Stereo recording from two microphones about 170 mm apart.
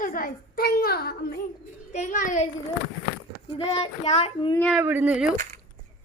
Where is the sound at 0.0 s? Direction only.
55° left (ahead or behind).